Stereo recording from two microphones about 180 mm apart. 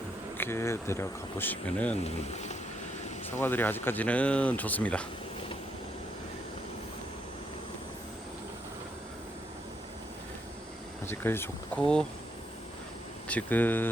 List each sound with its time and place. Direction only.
0.3 s speech: 15° left (ahead or behind)
2.0 s speech: 35° left (ahead or behind)
3.2 s speech: 10° left (ahead or behind)
11.0 s speech: 10° left (ahead or behind)
13.2 s speech: 10° left (ahead or behind)